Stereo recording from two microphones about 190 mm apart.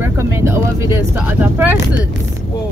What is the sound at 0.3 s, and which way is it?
Speech, 15° right (ahead or behind).